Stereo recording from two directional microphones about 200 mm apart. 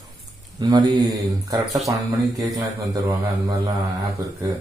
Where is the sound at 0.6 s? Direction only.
20° right (ahead or behind).